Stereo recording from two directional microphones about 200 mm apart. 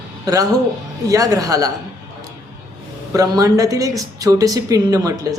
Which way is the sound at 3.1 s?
15° right (ahead or behind).